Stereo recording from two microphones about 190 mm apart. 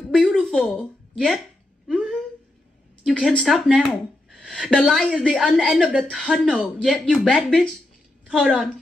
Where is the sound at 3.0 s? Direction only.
5° left (ahead or behind).